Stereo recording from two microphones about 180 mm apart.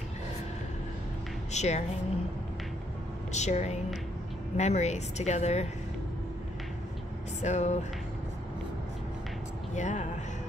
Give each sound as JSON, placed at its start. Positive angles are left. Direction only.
{"t": 1.5, "sound": "speech", "side_deg": 40}
{"t": 3.3, "sound": "a woman's voice", "side_deg": 40}
{"t": 7.4, "sound": "a woman's voice", "side_deg": 40}
{"t": 9.8, "sound": "a woman's voice", "side_deg": 40}